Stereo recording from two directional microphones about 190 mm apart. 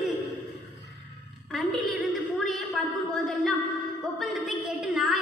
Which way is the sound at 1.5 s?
Centre (ahead or behind).